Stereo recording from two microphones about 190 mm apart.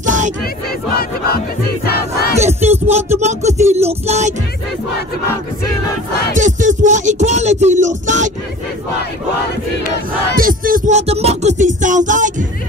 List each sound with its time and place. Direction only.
0.0 s crowd: 40° right (ahead or behind)
1.9 s crowd: 55° left (ahead or behind)
2.3 s a sound: 35° right (ahead or behind)
3.2 s music: 35° right (ahead or behind)
6.3 s music: 40° right (ahead or behind)
10.3 s music: 50° right (ahead or behind)